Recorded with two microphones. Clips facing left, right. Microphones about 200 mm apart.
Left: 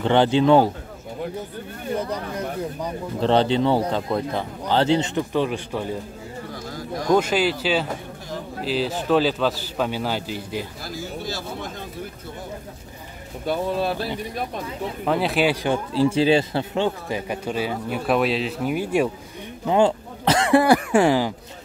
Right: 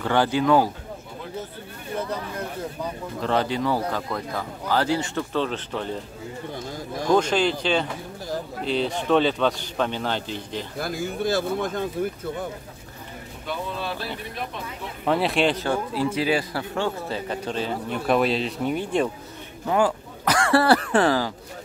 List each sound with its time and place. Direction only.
0.0 s speech: 25° left (ahead or behind)
3.2 s speech: 30° left (ahead or behind); by 5.9 s 10° left (ahead or behind)
7.1 s a man's voice: 5° left (ahead or behind)
10.8 s speech: 55° right (ahead or behind)
13.5 s speech: 40° left (ahead or behind)
15.0 s a man's voice: centre (ahead or behind)
16.2 s a man's voice: 25° left (ahead or behind); by 19.0 s 10° left (ahead or behind)
19.7 s speech: 25° left (ahead or behind)